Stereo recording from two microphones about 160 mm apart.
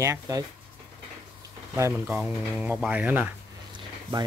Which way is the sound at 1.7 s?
20° right (ahead or behind).